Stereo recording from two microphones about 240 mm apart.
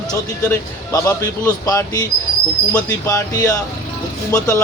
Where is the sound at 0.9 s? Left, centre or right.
Centre.